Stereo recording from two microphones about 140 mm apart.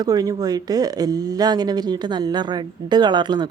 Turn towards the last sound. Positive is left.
turn(degrees=-30)  # may be behind; listen again after turning